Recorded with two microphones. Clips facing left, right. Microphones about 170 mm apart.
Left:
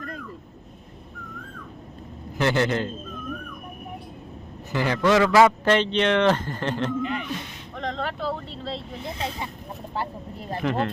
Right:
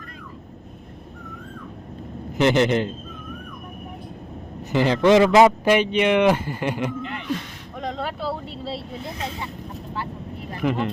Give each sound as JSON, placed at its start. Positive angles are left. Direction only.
{"t": 2.4, "sound": "a man's voice", "side_deg": -20}
{"t": 4.7, "sound": "a man's voice", "side_deg": -20}
{"t": 7.0, "sound": "a sound", "side_deg": 20}
{"t": 7.8, "sound": "speech", "side_deg": -10}
{"t": 10.6, "sound": "speech", "side_deg": -5}